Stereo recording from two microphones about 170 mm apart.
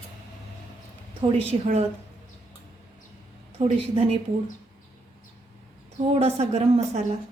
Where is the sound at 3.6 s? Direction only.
35° right (ahead or behind).